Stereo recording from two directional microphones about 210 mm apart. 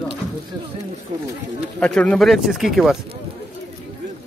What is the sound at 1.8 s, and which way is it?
Speech, 5° left (ahead or behind).